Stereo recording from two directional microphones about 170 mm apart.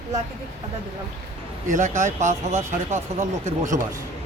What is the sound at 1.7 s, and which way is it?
Speech, 45° right (ahead or behind).